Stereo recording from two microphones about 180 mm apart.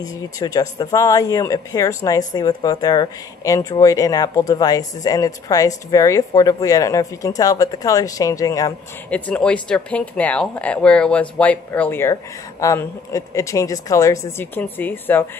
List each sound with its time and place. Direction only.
0.0 s speech: 20° left (ahead or behind)
9.1 s speech: 5° left (ahead or behind)